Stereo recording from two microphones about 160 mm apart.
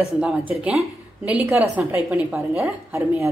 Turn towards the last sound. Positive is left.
turn(degrees=-15)  # may be behind; listen again after turning